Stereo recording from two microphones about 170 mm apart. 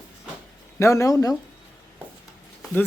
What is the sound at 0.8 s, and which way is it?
Speech, 20° left (ahead or behind).